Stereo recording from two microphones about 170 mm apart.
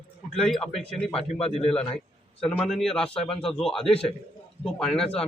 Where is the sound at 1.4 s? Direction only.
35° left (ahead or behind).